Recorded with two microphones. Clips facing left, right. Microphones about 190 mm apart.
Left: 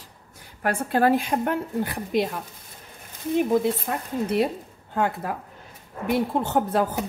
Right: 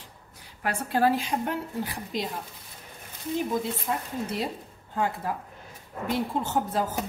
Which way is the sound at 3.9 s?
65° left (ahead or behind).